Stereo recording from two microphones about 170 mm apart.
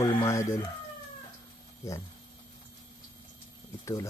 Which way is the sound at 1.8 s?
15° left (ahead or behind).